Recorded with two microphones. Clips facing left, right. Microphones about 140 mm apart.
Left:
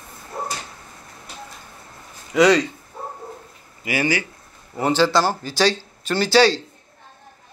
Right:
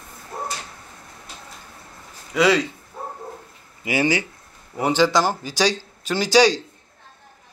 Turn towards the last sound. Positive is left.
turn(degrees=-15)  # may be behind; listen again after turning